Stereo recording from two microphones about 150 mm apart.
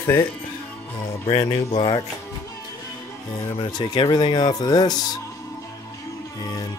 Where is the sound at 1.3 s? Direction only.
45° left (ahead or behind).